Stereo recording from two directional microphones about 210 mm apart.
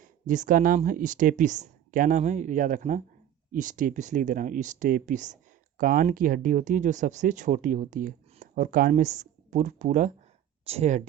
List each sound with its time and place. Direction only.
0.0 s speech: 40° right (ahead or behind)